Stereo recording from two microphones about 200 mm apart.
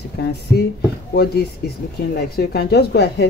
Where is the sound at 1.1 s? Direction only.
50° left (ahead or behind).